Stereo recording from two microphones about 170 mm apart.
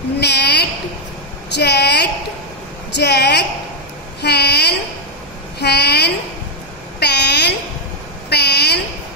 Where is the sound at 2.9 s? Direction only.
75° left (ahead or behind).